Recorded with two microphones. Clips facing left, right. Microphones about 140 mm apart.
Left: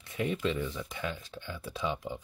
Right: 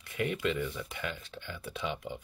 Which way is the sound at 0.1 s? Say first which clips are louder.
Even; 20° left (ahead or behind).